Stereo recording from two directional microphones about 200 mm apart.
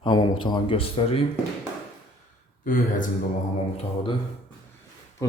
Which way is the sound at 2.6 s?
45° left (ahead or behind).